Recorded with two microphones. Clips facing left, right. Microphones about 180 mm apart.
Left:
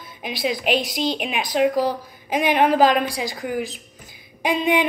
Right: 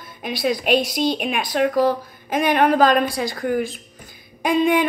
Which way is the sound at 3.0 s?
50° right (ahead or behind).